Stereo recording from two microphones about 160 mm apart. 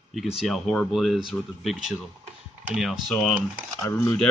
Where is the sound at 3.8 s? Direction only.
20° left (ahead or behind).